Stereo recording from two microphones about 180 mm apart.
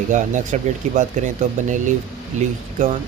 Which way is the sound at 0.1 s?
45° right (ahead or behind).